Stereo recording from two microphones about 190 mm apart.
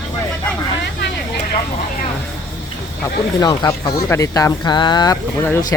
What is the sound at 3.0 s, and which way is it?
Speech, 20° left (ahead or behind).